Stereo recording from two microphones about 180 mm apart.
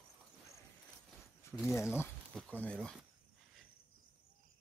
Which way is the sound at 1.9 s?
10° left (ahead or behind).